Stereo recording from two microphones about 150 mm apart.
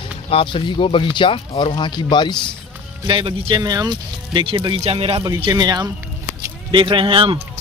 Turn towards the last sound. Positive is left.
turn(degrees=-35)  # may be behind; listen again after turning